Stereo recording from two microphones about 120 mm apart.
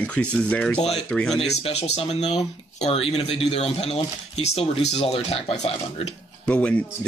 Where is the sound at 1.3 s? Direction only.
60° left (ahead or behind).